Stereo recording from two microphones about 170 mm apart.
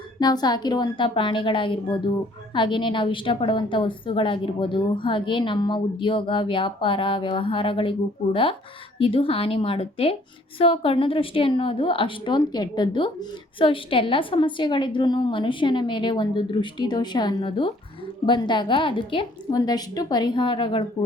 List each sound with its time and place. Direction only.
0.2 s a woman's voice: 25° left (ahead or behind)